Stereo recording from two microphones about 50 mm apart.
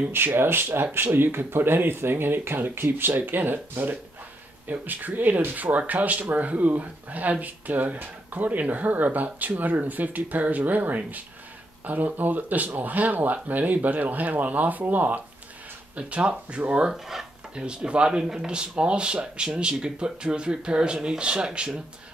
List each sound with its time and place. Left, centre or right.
0.1 s speech: right
16.9 s speech: centre
17.6 s speech: right